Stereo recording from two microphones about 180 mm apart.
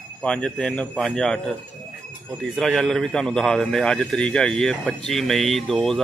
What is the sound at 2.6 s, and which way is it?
A man's voice, centre (ahead or behind).